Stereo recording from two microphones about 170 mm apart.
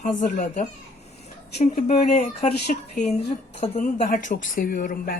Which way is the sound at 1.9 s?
40° left (ahead or behind).